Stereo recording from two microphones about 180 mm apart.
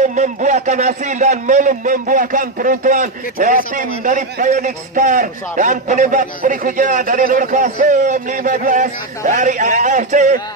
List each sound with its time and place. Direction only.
0.0 s a man's voice: 40° right (ahead or behind)